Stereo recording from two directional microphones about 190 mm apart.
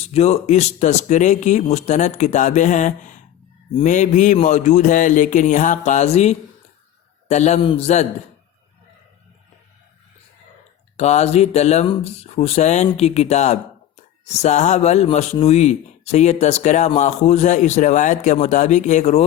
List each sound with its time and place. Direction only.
0.1 s speech: 35° left (ahead or behind)
10.9 s speech: 35° left (ahead or behind)